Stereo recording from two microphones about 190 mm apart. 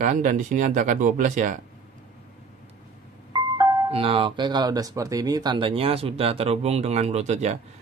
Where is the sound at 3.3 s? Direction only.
20° right (ahead or behind).